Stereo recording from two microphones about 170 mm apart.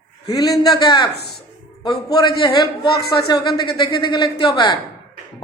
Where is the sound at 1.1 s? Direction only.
70° left (ahead or behind).